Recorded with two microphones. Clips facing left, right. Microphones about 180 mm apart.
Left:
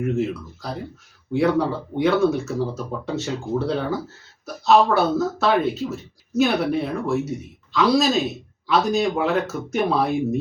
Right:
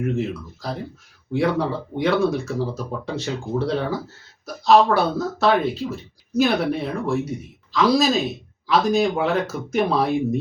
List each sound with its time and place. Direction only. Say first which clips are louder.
0.0 s speech: left 1 dB; centre (ahead or behind)